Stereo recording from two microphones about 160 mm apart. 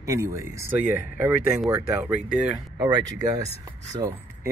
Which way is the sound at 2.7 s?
25° right (ahead or behind).